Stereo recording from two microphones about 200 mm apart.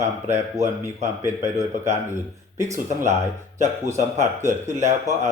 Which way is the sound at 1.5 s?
35° right (ahead or behind).